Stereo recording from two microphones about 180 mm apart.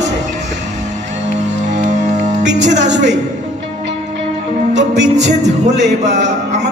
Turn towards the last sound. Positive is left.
turn(degrees=-75)  # may be behind; listen again after turning